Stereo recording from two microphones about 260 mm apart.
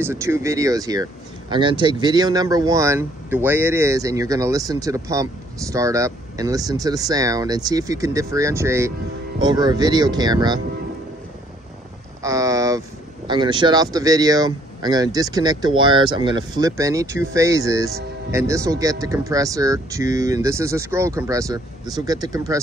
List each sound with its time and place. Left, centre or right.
0.0 s speech: centre
12.2 s a sound: centre
13.3 s speech: centre